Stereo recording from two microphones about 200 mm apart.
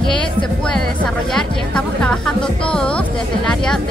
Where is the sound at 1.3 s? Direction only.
5° left (ahead or behind).